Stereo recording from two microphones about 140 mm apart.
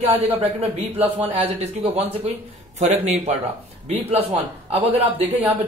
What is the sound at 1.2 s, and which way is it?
A man's voice, 45° right (ahead or behind).